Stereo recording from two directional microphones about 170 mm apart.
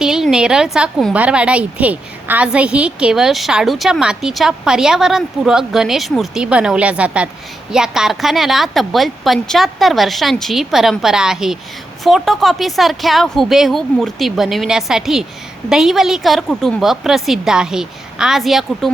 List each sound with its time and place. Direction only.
0.0 s a woman's voice: 5° right (ahead or behind)